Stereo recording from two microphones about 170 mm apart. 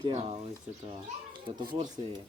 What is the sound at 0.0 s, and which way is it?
Speech, 40° right (ahead or behind).